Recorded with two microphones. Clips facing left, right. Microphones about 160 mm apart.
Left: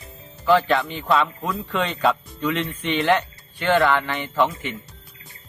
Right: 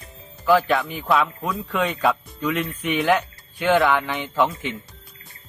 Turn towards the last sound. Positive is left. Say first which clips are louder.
# even
turn(degrees=-15)  # may be behind; listen again after turning